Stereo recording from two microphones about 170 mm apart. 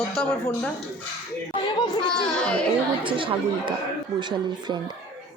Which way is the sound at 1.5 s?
30° left (ahead or behind).